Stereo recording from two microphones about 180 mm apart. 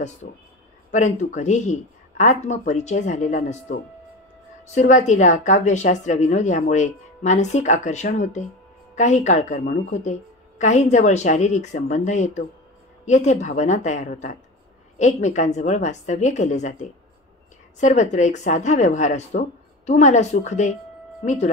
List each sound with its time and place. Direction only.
0.2 s a woman's voice: 45° left (ahead or behind)
4.7 s a woman's voice: 40° left (ahead or behind)